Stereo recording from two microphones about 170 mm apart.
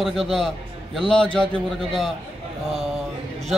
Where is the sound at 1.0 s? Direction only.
5° left (ahead or behind).